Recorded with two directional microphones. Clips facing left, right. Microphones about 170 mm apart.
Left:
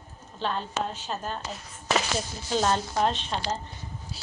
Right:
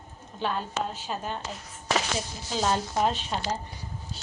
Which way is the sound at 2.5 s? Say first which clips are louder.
Left 1 dB; centre (ahead or behind).